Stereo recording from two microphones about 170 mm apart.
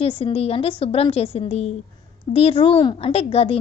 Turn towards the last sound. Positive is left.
turn(degrees=35)  # may be behind; listen again after turning